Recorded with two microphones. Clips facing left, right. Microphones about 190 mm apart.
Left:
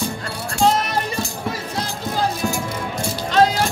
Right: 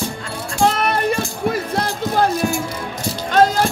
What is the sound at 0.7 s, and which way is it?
Music, 60° right (ahead or behind).